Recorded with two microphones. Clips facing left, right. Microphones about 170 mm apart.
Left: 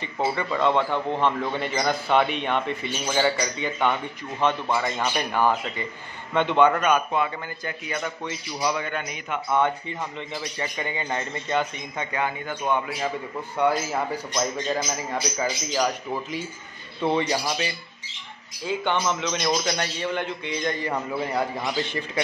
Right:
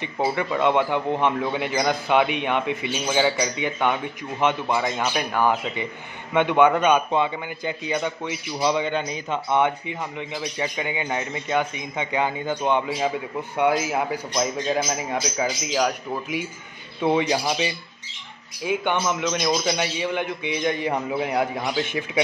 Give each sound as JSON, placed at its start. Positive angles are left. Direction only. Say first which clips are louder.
{"t": 0.5, "sound": "a man's voice", "louder": "right 1 dB", "side_deg": -15}
{"t": 3.5, "sound": "a man's voice", "louder": "right 1 dB", "side_deg": -15}
{"t": 9.6, "sound": "a man's voice", "louder": "even", "side_deg": -15}
{"t": 12.2, "sound": "a man's voice", "louder": "right 4 dB", "side_deg": -25}